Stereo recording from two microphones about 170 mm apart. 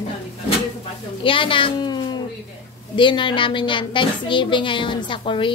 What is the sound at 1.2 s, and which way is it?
A woman's voice, 30° left (ahead or behind).